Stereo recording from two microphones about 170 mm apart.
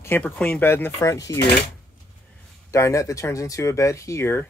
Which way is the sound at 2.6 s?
15° left (ahead or behind).